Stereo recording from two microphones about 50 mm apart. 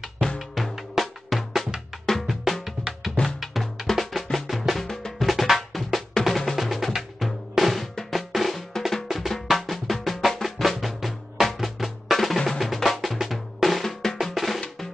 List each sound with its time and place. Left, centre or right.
0.4 s music: centre
2.0 s drum: centre
3.3 s music: centre
5.2 s drum: centre
9.5 s music: centre
14.2 s drum: centre